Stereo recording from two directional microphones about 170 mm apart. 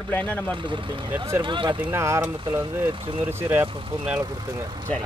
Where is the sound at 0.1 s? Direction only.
10° left (ahead or behind).